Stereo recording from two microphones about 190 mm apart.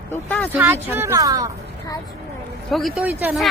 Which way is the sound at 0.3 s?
10° left (ahead or behind).